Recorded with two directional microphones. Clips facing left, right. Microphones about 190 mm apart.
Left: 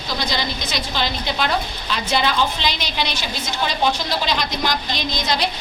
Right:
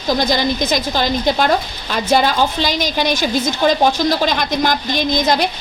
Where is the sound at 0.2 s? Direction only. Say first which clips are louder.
Right 8 dB; 45° right (ahead or behind).